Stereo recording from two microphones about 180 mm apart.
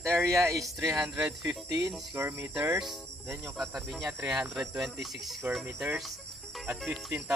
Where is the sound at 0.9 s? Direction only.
5° right (ahead or behind).